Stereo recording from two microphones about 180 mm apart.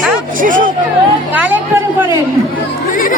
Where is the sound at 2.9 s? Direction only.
50° left (ahead or behind).